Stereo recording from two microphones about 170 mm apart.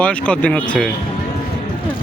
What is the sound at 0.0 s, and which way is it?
Speech, 5° left (ahead or behind).